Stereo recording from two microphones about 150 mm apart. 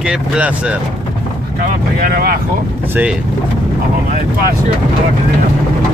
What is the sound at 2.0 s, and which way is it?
Speech, 90° right.